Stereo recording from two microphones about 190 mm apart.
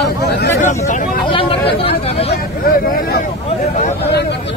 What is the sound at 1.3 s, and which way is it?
Speech, 30° left (ahead or behind).